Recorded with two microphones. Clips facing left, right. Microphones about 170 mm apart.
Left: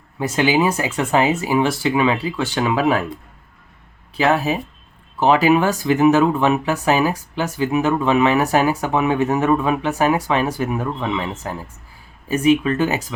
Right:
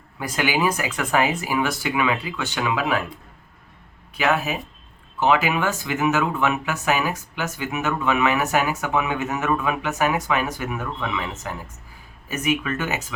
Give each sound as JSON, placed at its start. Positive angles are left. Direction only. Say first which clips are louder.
{"t": 0.2, "sound": "speech", "louder": "left 5 dB", "side_deg": 25}
{"t": 4.1, "sound": "speech", "louder": "left 5 dB", "side_deg": 35}